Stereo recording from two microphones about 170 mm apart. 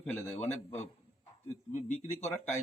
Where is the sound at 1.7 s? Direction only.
45° left (ahead or behind).